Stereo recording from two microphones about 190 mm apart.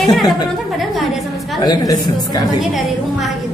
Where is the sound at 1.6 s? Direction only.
20° left (ahead or behind).